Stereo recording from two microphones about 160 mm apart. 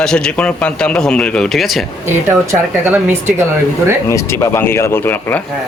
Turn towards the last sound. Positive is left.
turn(degrees=15)  # may be behind; listen again after turning